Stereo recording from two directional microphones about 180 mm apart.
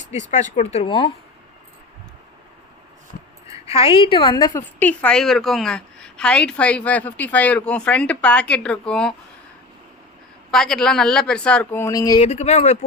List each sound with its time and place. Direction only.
0.1 s speech: 40° left (ahead or behind)
3.7 s a woman's voice: 35° left (ahead or behind)
4.8 s a woman's voice: 10° left (ahead or behind)
10.5 s speech: 5° left (ahead or behind); by 12.2 s 20° left (ahead or behind)
12.2 s speech: 35° left (ahead or behind)